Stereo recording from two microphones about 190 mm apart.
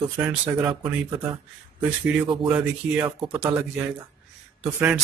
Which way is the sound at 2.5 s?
10° right (ahead or behind).